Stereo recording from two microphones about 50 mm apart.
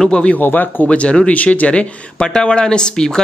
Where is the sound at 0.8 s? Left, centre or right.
Left.